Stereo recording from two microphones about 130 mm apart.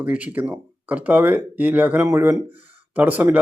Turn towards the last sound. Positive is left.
turn(degrees=-10)  # may be behind; listen again after turning